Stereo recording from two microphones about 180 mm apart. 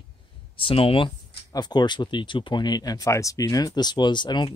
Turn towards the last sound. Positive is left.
turn(degrees=25)  # may be behind; listen again after turning